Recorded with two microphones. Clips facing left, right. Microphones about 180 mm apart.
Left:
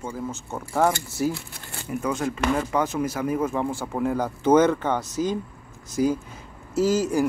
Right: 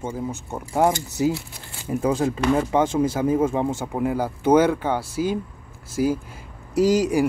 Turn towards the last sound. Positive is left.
turn(degrees=-15)  # may be behind; listen again after turning